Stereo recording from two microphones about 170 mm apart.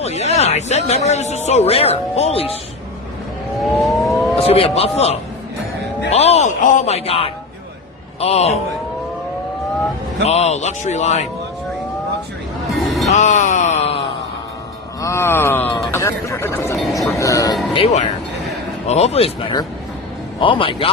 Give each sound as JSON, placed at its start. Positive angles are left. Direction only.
{"t": 0.0, "sound": "speech", "side_deg": 40}
{"t": 3.6, "sound": "a sound", "side_deg": 0}
{"t": 4.4, "sound": "speech", "side_deg": 35}
{"t": 10.2, "sound": "speech", "side_deg": 40}
{"t": 12.7, "sound": "music", "side_deg": 0}
{"t": 13.1, "sound": "wail", "side_deg": 45}
{"t": 15.0, "sound": "speech", "side_deg": 15}
{"t": 17.7, "sound": "speech", "side_deg": 40}